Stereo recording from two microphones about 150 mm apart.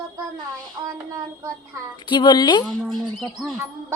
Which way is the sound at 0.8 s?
20° right (ahead or behind).